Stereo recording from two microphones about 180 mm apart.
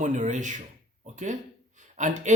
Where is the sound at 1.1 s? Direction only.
45° right (ahead or behind).